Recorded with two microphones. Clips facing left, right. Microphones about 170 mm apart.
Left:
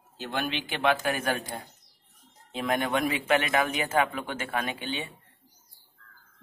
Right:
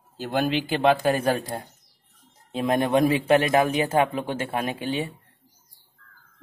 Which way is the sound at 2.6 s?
30° right (ahead or behind).